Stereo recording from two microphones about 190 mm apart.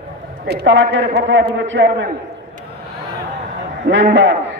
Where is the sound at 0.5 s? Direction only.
80° right.